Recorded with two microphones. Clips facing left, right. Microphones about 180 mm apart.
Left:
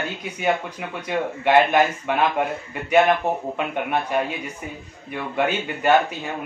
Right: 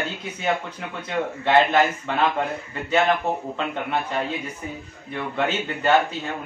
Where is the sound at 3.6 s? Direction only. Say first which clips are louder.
Left 2 dB; 15° left (ahead or behind).